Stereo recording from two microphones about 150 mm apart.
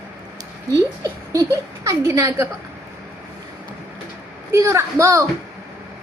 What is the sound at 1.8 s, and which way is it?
Speech, 20° right (ahead or behind).